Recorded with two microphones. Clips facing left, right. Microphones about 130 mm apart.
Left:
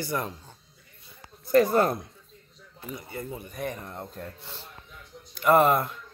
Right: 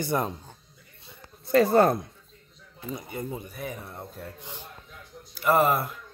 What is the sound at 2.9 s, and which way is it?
Speech, 20° right (ahead or behind).